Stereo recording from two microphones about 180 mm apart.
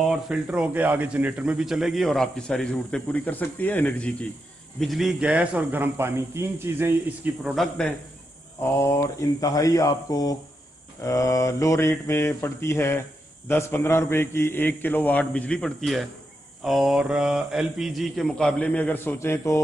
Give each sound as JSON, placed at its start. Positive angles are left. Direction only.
{"t": 0.0, "sound": "a man's voice", "side_deg": -5}
{"t": 7.4, "sound": "a man's voice", "side_deg": 0}
{"t": 8.7, "sound": "a man's voice", "side_deg": 15}